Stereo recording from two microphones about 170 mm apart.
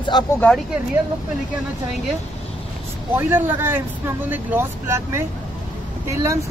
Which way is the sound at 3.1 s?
10° right (ahead or behind).